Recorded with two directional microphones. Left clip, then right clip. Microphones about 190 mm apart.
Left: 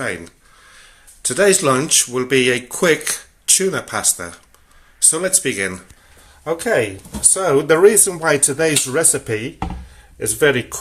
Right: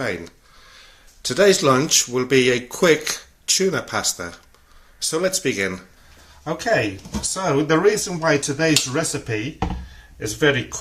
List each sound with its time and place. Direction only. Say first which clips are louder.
0.0 s speech: left 1 dB; centre (ahead or behind)
7.2 s speech: left 5 dB; 45° left (ahead or behind)